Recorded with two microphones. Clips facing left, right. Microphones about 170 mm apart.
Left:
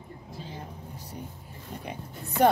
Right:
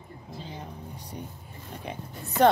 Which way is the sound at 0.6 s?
5° left (ahead or behind).